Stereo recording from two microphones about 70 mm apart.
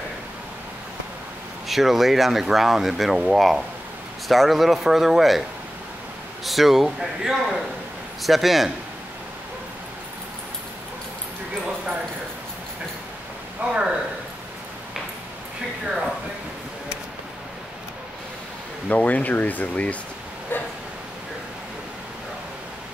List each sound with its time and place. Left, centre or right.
1.7 s speech: centre
6.4 s speech: centre
11.6 s clip-clop: centre
13.7 s speech: centre
18.9 s speech: left